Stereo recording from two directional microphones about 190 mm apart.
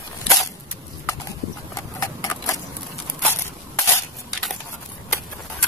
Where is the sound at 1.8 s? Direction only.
15° left (ahead or behind).